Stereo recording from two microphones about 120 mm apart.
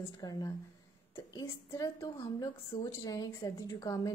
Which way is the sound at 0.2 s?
30° left (ahead or behind).